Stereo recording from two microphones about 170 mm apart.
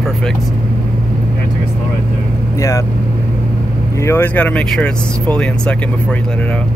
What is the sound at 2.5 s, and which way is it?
Vehicle, 20° left (ahead or behind).